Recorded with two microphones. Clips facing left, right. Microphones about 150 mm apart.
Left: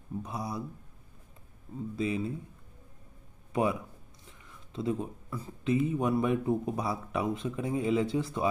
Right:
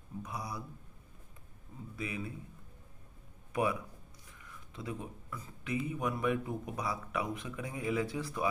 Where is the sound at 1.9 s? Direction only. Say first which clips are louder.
Left 8 dB; 25° left (ahead or behind).